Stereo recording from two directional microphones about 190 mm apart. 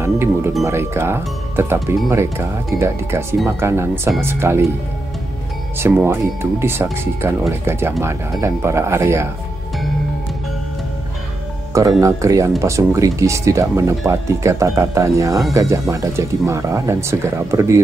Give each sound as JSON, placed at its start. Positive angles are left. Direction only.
{"t": 0.0, "sound": "speech", "side_deg": -15}
{"t": 5.8, "sound": "speech", "side_deg": -10}
{"t": 12.0, "sound": "speech", "side_deg": -15}